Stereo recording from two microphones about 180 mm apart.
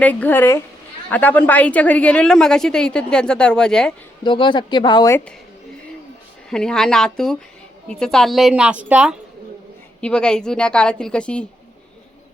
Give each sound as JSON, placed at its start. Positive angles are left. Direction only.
{"t": 0.0, "sound": "a woman's voice", "side_deg": 10}
{"t": 4.2, "sound": "speech", "side_deg": 25}
{"t": 6.5, "sound": "a woman's voice", "side_deg": 5}
{"t": 10.0, "sound": "a woman's voice", "side_deg": 5}